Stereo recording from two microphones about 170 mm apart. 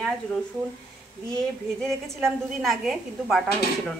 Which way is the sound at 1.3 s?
Centre (ahead or behind).